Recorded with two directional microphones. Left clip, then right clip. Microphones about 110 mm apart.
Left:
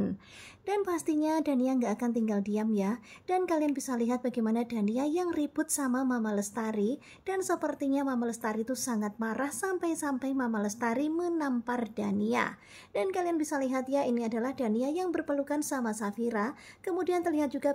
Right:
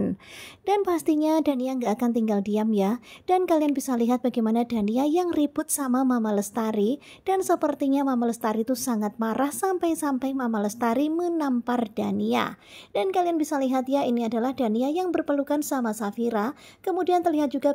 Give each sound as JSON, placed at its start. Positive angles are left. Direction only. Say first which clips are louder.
{"t": 0.7, "sound": "a woman's voice", "louder": "right 8 dB", "side_deg": -40}